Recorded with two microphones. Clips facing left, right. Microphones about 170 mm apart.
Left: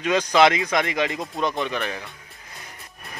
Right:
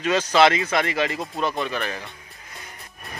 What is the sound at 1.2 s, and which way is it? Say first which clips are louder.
Speech: even; 5° right (ahead or behind).